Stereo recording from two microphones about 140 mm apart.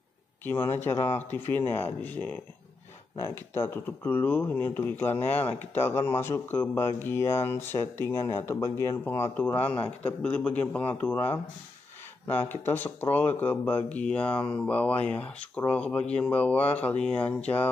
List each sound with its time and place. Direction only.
0.4 s speech: 15° left (ahead or behind)